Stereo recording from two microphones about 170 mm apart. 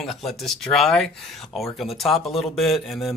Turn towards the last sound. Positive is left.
turn(degrees=0)  # may be behind; listen again after turning